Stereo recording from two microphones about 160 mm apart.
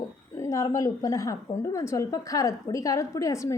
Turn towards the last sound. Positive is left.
turn(degrees=20)  # may be behind; listen again after turning